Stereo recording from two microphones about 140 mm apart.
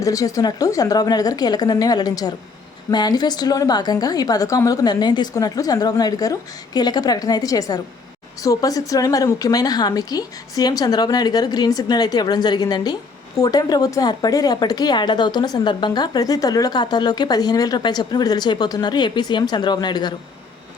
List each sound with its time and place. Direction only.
0.0 s a woman's voice: 25° left (ahead or behind)